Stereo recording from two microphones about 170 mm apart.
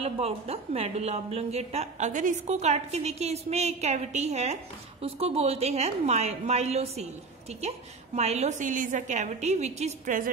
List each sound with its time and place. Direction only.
0.0 s a woman's voice: 35° right (ahead or behind)